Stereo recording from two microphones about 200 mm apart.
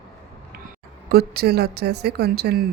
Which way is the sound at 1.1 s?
50° right (ahead or behind).